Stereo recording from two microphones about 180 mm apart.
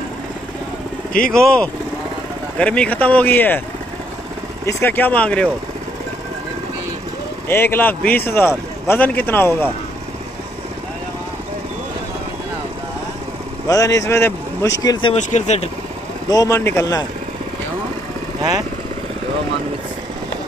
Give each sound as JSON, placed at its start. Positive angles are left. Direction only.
{"t": 1.3, "sound": "speech", "side_deg": 5}
{"t": 4.6, "sound": "speech", "side_deg": 15}
{"t": 7.4, "sound": "speech", "side_deg": 10}
{"t": 13.7, "sound": "speech", "side_deg": 20}
{"t": 15.1, "sound": "speech", "side_deg": 40}
{"t": 16.3, "sound": "speech", "side_deg": 20}